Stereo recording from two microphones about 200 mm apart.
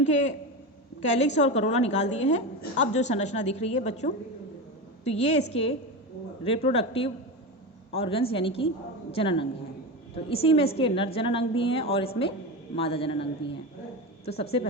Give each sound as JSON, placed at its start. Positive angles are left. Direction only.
{"t": 0.0, "sound": "a woman's voice", "side_deg": 35}